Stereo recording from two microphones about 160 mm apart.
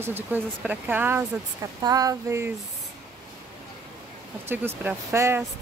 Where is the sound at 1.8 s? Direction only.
20° right (ahead or behind).